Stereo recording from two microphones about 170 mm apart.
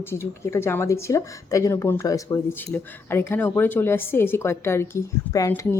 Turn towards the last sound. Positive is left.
turn(degrees=15)  # may be behind; listen again after turning